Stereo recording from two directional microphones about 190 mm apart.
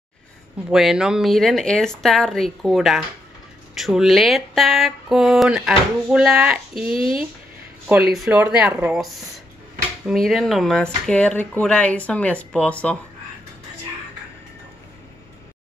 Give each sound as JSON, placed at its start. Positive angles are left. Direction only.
{"t": 0.7, "sound": "speech", "side_deg": -5}
{"t": 7.0, "sound": "speech", "side_deg": 25}
{"t": 8.1, "sound": "speech", "side_deg": -5}